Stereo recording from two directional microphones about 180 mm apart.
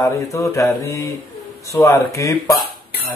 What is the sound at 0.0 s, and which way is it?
Speech, 15° left (ahead or behind).